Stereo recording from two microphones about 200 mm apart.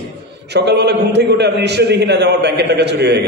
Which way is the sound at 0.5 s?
60° right (ahead or behind).